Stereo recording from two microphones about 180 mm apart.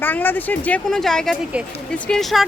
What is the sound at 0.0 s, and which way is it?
Speech, 10° left (ahead or behind).